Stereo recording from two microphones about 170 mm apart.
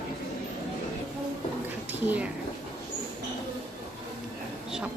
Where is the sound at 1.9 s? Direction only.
10° right (ahead or behind).